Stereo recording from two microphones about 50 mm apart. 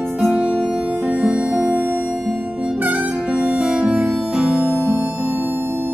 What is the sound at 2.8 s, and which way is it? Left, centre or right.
Harmonica, right.